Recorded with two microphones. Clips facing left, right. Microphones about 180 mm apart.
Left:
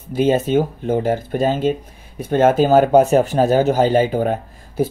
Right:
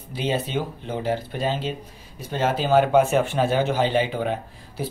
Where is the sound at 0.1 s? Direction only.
45° left (ahead or behind).